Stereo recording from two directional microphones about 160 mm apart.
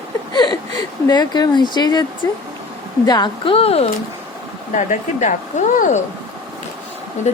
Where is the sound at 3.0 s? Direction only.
25° left (ahead or behind).